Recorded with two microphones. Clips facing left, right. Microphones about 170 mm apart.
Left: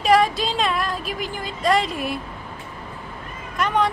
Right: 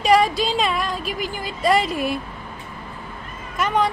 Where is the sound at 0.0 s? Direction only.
Centre (ahead or behind).